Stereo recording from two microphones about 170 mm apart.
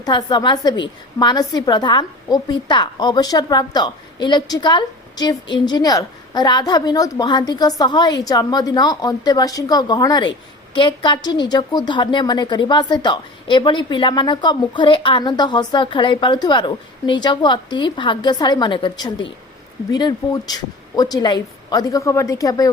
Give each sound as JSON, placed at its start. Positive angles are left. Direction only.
{"t": 0.0, "sound": "a woman's voice", "side_deg": 25}